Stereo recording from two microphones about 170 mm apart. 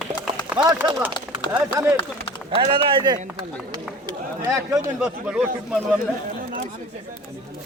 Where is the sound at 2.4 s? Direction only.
30° right (ahead or behind).